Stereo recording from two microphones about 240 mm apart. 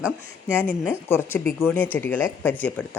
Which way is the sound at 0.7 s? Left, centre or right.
Centre.